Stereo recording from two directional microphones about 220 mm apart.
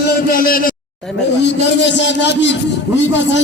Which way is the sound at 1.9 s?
55° left (ahead or behind).